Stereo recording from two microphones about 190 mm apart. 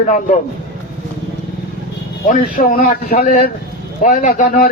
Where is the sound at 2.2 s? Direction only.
45° left (ahead or behind).